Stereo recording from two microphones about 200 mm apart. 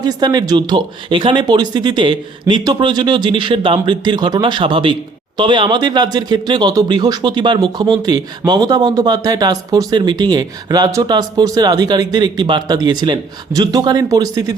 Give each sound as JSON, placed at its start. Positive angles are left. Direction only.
{"t": 0.0, "sound": "speech", "side_deg": -20}